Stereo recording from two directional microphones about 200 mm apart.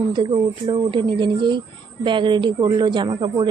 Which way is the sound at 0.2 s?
25° right (ahead or behind).